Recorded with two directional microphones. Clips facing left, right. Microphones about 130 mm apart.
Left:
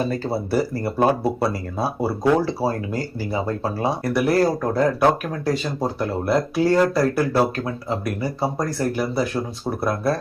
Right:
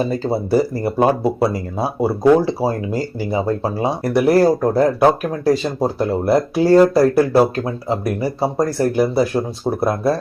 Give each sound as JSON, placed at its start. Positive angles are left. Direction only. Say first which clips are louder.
{"t": 0.3, "sound": "speech", "louder": "right 5 dB", "side_deg": -20}